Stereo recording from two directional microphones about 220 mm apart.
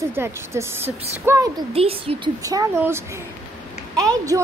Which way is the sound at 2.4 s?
15° right (ahead or behind).